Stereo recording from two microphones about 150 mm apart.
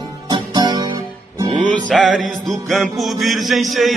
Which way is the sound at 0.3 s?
30° right (ahead or behind).